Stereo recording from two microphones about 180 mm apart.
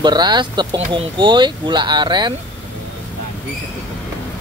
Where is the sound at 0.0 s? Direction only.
25° right (ahead or behind).